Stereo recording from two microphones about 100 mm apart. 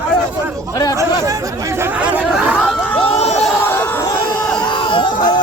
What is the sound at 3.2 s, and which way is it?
Crowd, 90° left.